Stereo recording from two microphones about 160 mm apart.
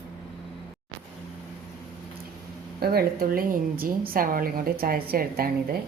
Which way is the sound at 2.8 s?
70° right (ahead or behind).